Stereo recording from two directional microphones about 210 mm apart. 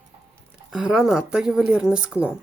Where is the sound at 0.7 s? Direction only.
5° right (ahead or behind).